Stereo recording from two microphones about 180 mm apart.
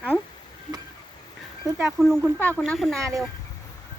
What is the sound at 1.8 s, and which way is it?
A man's voice, centre (ahead or behind).